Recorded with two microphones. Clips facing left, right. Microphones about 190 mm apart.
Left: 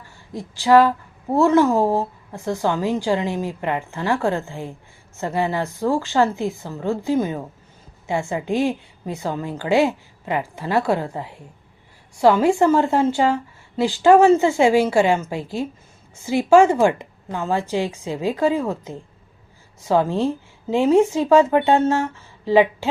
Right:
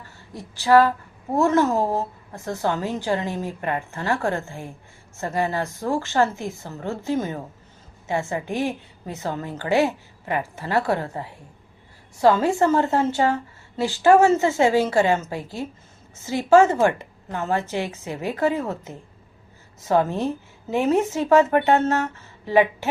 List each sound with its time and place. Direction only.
0.3 s a woman's voice: 15° left (ahead or behind)